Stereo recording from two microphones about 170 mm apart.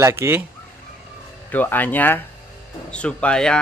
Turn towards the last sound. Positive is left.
turn(degrees=5)  # may be behind; listen again after turning